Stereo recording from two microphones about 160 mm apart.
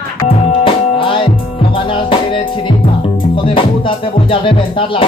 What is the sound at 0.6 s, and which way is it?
Music, 35° left (ahead or behind).